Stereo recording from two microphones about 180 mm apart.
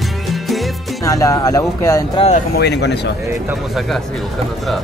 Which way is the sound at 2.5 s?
70° left (ahead or behind).